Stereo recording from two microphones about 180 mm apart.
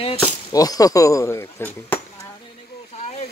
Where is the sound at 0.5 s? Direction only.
20° left (ahead or behind).